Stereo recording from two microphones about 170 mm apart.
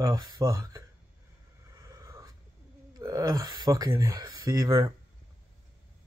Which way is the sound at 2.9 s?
20° right (ahead or behind).